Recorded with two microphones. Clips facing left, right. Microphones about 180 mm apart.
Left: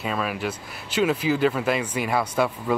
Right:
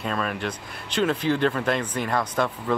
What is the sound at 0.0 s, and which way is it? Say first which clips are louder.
Speech: left 1 dB; 5° left (ahead or behind).